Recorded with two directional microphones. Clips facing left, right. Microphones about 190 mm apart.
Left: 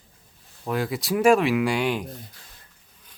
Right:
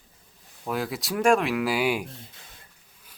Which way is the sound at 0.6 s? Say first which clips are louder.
Left 3 dB; centre (ahead or behind).